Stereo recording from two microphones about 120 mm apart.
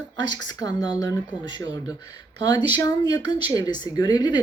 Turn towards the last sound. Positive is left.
turn(degrees=35)  # may be behind; listen again after turning